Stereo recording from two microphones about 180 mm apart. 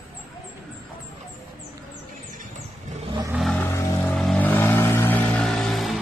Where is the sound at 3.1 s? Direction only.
20° right (ahead or behind).